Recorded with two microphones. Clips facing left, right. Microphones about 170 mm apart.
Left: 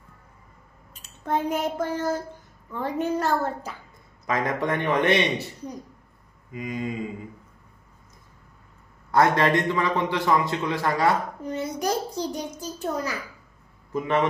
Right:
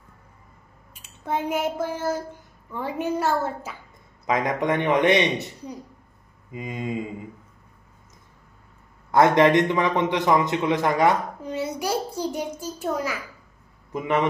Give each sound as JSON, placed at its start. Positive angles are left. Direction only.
{"t": 1.2, "sound": "a woman's voice", "side_deg": -10}
{"t": 4.3, "sound": "a man's voice", "side_deg": -20}
{"t": 6.5, "sound": "a man's voice", "side_deg": -25}
{"t": 9.1, "sound": "a man's voice", "side_deg": -20}
{"t": 11.5, "sound": "a woman's voice", "side_deg": -10}